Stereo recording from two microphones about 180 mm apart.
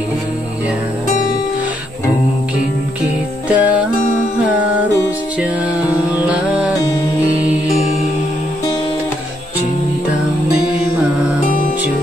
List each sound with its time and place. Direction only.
3.4 s music: 5° right (ahead or behind)
6.2 s music: 5° right (ahead or behind)
11.4 s music: 45° left (ahead or behind)